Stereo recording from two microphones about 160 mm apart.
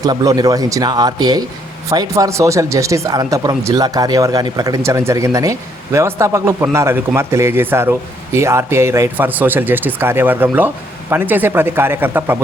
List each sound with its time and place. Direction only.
0.0 s speech: 25° right (ahead or behind)